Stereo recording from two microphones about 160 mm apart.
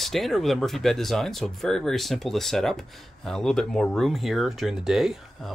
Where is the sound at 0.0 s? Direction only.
Centre (ahead or behind).